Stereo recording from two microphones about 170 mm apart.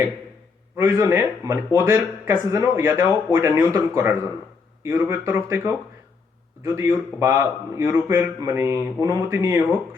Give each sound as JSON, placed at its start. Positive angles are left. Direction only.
{"t": 0.8, "sound": "a man's voice", "side_deg": -15}